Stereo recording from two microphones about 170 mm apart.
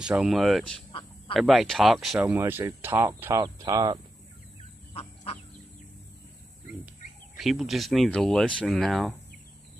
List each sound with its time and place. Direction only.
0.0 s speech: 5° right (ahead or behind); by 4.0 s 25° right (ahead or behind)
4.9 s fowl: 35° left (ahead or behind)
7.3 s speech: centre (ahead or behind)